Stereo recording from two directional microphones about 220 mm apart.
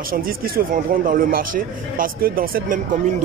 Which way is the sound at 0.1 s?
40° right (ahead or behind).